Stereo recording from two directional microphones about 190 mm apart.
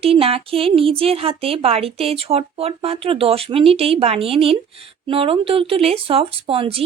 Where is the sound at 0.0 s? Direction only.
30° right (ahead or behind).